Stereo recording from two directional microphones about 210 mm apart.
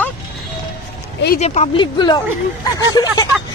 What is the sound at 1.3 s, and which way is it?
Speech, 30° left (ahead or behind).